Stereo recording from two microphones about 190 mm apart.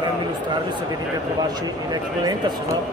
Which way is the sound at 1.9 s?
20° right (ahead or behind).